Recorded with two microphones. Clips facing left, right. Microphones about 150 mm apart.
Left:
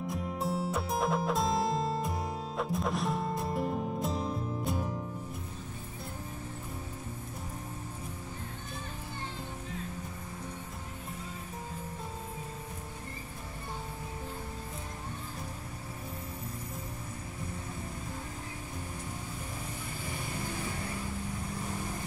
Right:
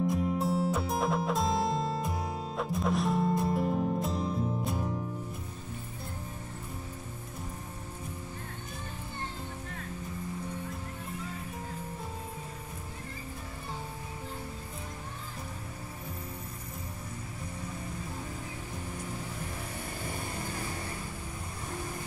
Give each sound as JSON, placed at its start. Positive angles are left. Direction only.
{"t": 0.1, "sound": "music", "side_deg": 0}